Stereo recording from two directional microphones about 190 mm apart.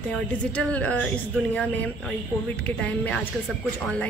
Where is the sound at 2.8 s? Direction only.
5° left (ahead or behind).